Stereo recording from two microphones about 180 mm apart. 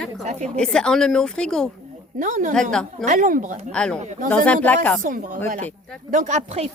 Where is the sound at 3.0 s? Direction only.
45° right (ahead or behind).